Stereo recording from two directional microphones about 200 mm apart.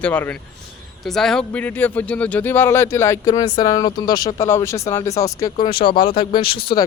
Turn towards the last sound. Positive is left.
turn(degrees=25)  # may be behind; listen again after turning